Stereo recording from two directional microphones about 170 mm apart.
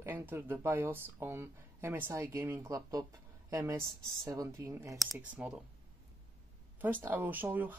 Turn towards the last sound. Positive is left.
turn(degrees=-10)  # may be behind; listen again after turning